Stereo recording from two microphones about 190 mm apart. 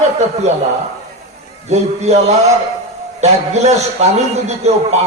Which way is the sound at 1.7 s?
35° right (ahead or behind).